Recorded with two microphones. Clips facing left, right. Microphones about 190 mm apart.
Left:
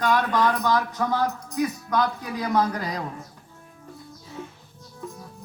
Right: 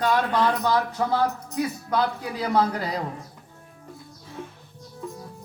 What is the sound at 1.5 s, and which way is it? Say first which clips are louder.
Speech: left 3 dB; 30° right (ahead or behind).